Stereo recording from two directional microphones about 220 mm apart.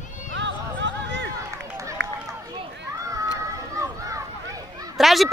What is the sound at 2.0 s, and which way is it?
Run, 50° right (ahead or behind).